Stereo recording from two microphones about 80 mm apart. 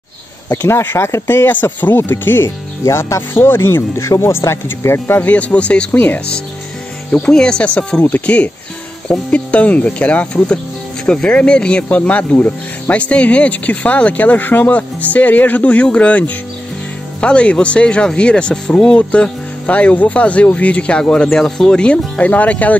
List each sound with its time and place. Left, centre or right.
0.7 s speech: left
7.1 s speech: centre